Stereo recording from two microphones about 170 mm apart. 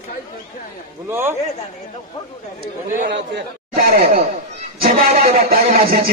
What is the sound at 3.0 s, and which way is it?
Speech, 85° right.